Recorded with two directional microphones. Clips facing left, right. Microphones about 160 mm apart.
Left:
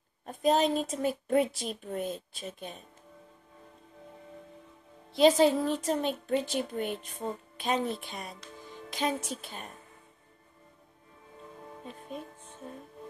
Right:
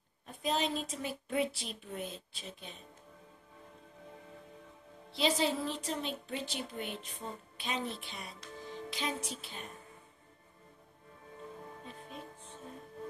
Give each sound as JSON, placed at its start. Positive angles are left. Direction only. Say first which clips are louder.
{"t": 0.2, "sound": "speech", "louder": "left 8 dB", "side_deg": 45}
{"t": 5.1, "sound": "speech", "louder": "left 10 dB", "side_deg": 45}